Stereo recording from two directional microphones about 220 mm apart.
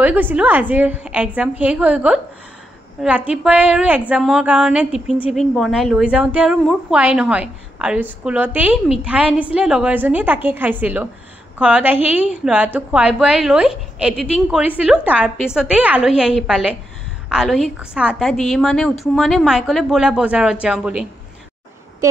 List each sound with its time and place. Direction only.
0.0 s a woman's voice: 10° right (ahead or behind)